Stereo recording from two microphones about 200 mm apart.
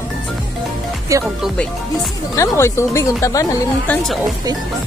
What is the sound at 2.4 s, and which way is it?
Speech, 15° left (ahead or behind).